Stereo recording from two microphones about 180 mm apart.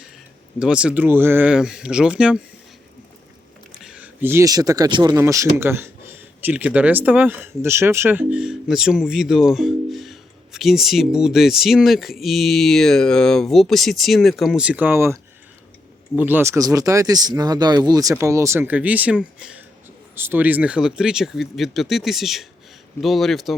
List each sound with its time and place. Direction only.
0.6 s speech: 5° right (ahead or behind)
3.7 s speech: 5° right (ahead or behind)